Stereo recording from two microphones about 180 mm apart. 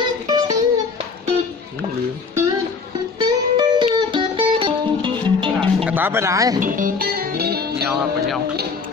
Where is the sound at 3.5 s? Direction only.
25° right (ahead or behind).